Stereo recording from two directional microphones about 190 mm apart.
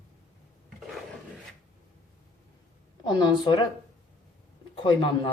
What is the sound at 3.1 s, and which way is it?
Speech, 25° left (ahead or behind).